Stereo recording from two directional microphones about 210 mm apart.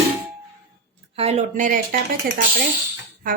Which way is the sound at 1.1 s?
30° right (ahead or behind).